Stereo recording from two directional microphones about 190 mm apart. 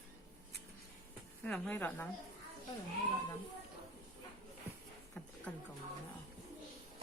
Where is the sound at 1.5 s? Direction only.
5° left (ahead or behind).